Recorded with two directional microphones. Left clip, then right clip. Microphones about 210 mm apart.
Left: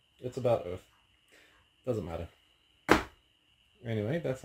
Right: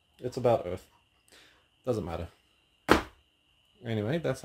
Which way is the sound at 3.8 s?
10° right (ahead or behind).